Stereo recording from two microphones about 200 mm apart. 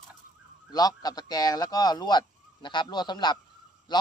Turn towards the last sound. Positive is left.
turn(degrees=20)  # may be behind; listen again after turning